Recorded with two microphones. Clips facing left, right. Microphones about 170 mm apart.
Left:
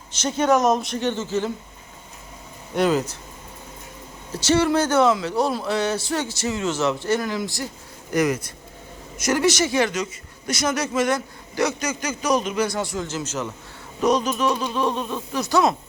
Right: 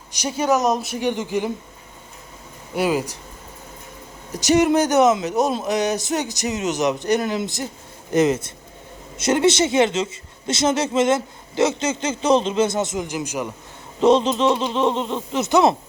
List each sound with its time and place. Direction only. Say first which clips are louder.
0.1 s speech: left 1 dB; 10° right (ahead or behind)
2.7 s speech: left 1 dB; 10° right (ahead or behind)
4.3 s speech: right 3 dB; 15° right (ahead or behind)
14.0 s speech: right 4 dB; 25° right (ahead or behind)